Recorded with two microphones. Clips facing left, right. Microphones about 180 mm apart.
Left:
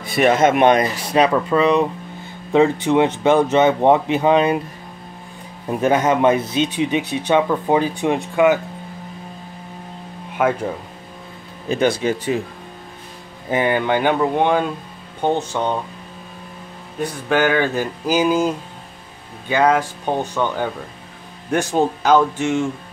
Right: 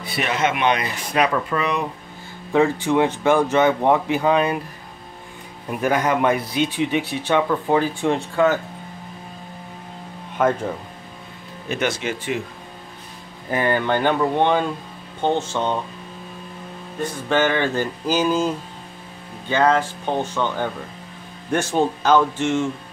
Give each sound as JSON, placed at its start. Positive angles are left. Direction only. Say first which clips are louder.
{"t": 0.0, "sound": "speech", "louder": "left 8 dB", "side_deg": 45}
{"t": 5.7, "sound": "speech", "louder": "left 4 dB", "side_deg": 25}
{"t": 10.3, "sound": "speech", "louder": "left 1 dB", "side_deg": 5}
{"t": 13.5, "sound": "speech", "louder": "left 2 dB", "side_deg": 15}
{"t": 17.0, "sound": "speech", "louder": "left 2 dB", "side_deg": 10}
{"t": 19.5, "sound": "speech", "louder": "left 2 dB", "side_deg": 10}